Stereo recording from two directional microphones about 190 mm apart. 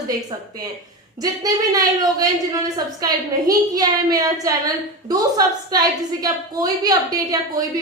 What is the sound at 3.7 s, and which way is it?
A woman's voice, 20° right (ahead or behind).